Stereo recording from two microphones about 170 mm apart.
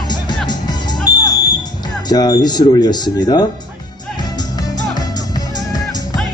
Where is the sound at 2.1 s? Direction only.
25° left (ahead or behind).